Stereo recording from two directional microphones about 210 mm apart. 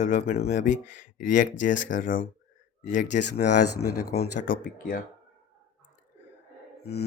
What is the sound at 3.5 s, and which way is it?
Speech, 90° left.